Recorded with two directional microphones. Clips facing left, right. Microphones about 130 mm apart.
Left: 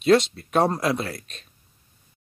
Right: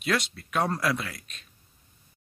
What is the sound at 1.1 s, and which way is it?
Speech, 35° left (ahead or behind).